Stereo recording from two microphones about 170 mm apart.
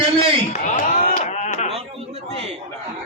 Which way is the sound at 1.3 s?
45° left (ahead or behind).